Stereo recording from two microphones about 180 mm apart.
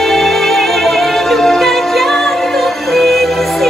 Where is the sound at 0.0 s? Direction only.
Centre (ahead or behind).